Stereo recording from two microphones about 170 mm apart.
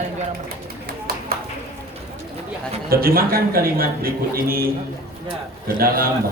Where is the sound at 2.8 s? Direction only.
60° right (ahead or behind).